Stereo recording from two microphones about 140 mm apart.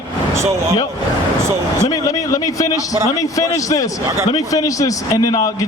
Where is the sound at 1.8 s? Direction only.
25° left (ahead or behind).